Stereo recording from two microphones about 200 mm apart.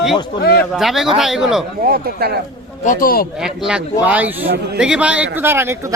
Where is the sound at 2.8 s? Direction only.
40° left (ahead or behind).